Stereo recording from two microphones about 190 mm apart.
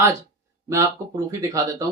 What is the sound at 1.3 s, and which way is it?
Speech, 15° right (ahead or behind).